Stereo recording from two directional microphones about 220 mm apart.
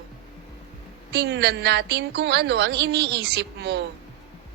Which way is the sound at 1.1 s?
50° right (ahead or behind).